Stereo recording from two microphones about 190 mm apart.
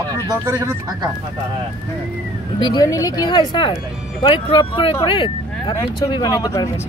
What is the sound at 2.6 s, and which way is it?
Speech, 20° left (ahead or behind).